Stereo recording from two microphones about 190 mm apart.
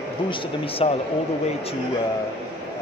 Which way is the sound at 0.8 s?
30° left (ahead or behind).